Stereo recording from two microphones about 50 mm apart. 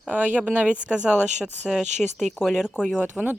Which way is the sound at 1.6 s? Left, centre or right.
Centre.